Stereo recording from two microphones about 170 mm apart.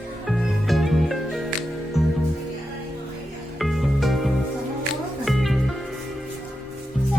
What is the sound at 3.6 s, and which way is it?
Music, centre (ahead or behind).